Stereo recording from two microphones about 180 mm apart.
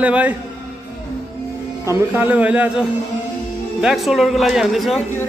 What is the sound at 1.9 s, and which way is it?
A man's voice, 10° right (ahead or behind).